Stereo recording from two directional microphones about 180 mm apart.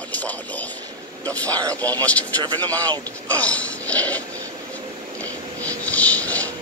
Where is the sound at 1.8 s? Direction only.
10° left (ahead or behind).